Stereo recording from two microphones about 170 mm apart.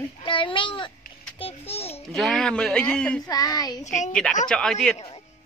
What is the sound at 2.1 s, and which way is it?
A man's voice, 5° left (ahead or behind).